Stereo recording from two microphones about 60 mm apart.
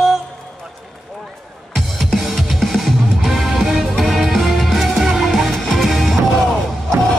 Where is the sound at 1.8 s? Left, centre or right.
Centre.